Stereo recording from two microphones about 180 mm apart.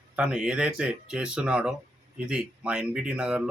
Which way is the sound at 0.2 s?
5° right (ahead or behind).